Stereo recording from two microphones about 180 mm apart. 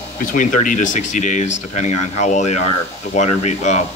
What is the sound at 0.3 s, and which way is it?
Speech, 45° left (ahead or behind).